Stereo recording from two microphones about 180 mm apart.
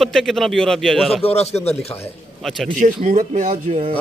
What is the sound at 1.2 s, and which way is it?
Speech, 35° left (ahead or behind).